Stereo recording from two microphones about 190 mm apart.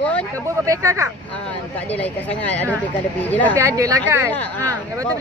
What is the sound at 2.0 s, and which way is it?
Speech, 5° left (ahead or behind).